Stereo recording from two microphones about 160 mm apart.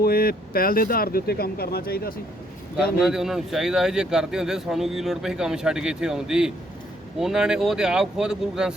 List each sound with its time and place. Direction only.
0.0 s speech: 70° left (ahead or behind)
2.7 s speech: 5° right (ahead or behind)